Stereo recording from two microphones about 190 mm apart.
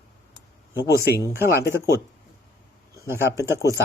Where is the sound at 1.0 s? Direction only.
15° right (ahead or behind).